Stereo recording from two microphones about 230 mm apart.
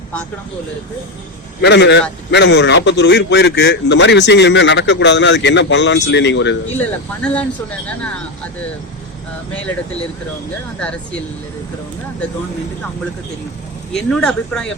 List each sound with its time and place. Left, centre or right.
1.6 s a man's voice: left
6.7 s speech: centre
10.8 s speech: centre
13.9 s speech: centre